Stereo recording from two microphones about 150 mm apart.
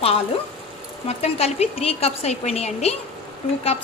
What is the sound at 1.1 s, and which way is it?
A woman's voice, 45° left (ahead or behind).